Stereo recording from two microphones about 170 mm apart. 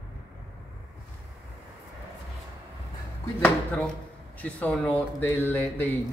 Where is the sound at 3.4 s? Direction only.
5° left (ahead or behind).